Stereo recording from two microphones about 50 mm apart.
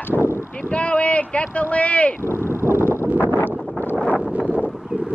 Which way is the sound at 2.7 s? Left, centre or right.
Right.